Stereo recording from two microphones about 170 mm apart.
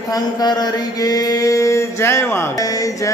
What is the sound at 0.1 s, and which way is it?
Mantra, 25° left (ahead or behind).